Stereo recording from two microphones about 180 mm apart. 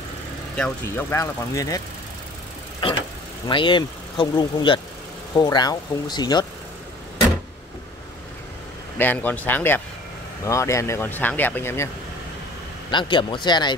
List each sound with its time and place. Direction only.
0.6 s speech: 15° left (ahead or behind)
2.8 s speech: 30° left (ahead or behind)
8.9 s speech: 10° left (ahead or behind)
12.9 s speech: 25° left (ahead or behind)